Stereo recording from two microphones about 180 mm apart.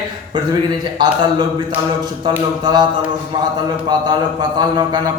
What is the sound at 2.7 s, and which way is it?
Speech, 25° right (ahead or behind).